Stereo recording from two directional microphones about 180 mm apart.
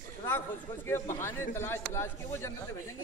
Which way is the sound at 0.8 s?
15° left (ahead or behind).